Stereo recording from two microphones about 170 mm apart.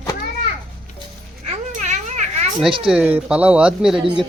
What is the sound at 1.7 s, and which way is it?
Children playing, 45° right (ahead or behind).